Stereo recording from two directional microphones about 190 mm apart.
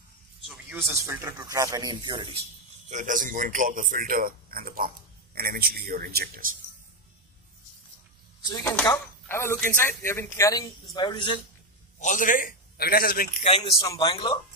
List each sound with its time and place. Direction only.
0.5 s a sound: centre (ahead or behind)
0.8 s speech: 15° right (ahead or behind)
2.9 s a man's voice: 40° right (ahead or behind)
8.5 s speech: 20° left (ahead or behind)
12.0 s a man's voice: 45° left (ahead or behind)
13.4 s speech: 30° left (ahead or behind)
13.7 s speech: 20° left (ahead or behind)